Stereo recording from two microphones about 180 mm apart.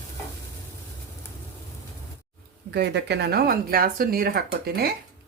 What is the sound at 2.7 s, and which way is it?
Speech, 70° right (ahead or behind).